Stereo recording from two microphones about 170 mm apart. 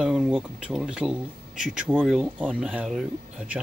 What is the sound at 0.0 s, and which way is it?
Speech, 5° right (ahead or behind).